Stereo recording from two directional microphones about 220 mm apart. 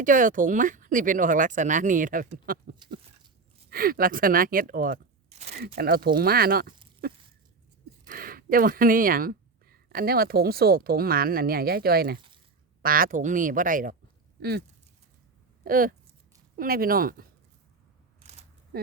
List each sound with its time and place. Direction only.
0.0 s speech: 35° right (ahead or behind)
5.6 s speech: 45° right (ahead or behind)
7.0 s a sound: 45° right (ahead or behind)
8.0 s speech: 40° right (ahead or behind)
15.6 s speech: 40° right (ahead or behind)
18.2 s single-lens reflex camera: 30° right (ahead or behind)